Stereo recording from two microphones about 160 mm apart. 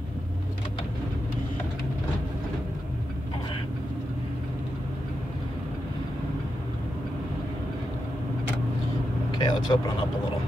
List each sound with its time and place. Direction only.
9.3 s vehicle: 25° left (ahead or behind)